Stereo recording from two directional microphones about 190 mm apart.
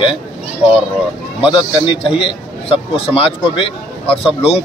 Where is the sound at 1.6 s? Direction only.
25° left (ahead or behind).